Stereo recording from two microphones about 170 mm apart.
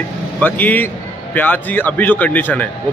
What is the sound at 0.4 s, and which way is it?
Speech, 10° left (ahead or behind).